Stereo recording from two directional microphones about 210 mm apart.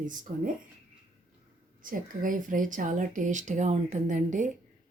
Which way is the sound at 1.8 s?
40° right (ahead or behind).